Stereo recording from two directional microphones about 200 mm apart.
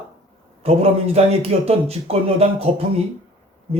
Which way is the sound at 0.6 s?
30° right (ahead or behind).